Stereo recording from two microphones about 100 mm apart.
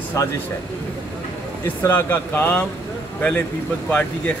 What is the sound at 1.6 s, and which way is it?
Speech, 20° left (ahead or behind).